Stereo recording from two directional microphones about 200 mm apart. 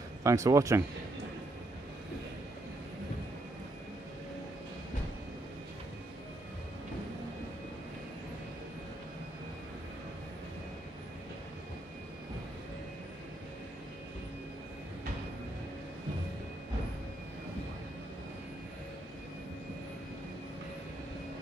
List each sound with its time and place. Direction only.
0.2 s speech: 15° right (ahead or behind)